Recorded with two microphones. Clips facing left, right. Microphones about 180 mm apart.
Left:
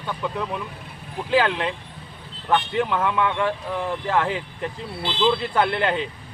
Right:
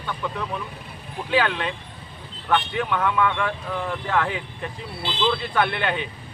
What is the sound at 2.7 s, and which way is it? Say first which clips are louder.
Speech: left 1 dB; 30° left (ahead or behind).